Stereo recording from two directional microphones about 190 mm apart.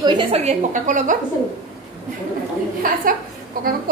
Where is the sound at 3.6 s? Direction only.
50° right (ahead or behind).